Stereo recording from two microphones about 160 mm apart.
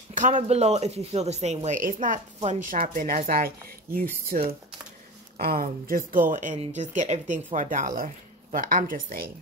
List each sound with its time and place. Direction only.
0.1 s a sound: 50° right (ahead or behind)
0.4 s a woman's voice: 40° right (ahead or behind); by 4.0 s 65° right (ahead or behind)
4.3 s a woman's voice: 50° right (ahead or behind)
5.4 s a woman's voice: 65° right (ahead or behind)